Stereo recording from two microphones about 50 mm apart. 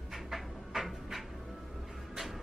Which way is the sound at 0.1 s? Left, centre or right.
Centre.